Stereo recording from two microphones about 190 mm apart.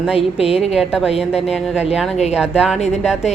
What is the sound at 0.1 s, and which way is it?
Speech, 30° left (ahead or behind).